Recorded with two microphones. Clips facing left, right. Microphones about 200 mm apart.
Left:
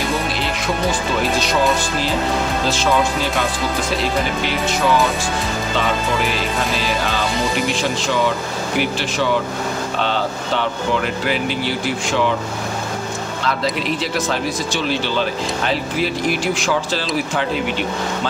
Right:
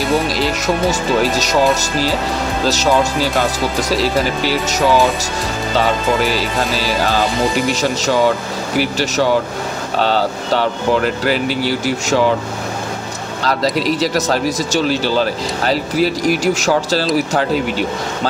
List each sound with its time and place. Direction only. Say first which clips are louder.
1.3 s speech: right 3 dB; 40° right (ahead or behind)
8.7 s speech: right 4 dB; 40° right (ahead or behind)
13.4 s speech: right 5 dB; 35° right (ahead or behind)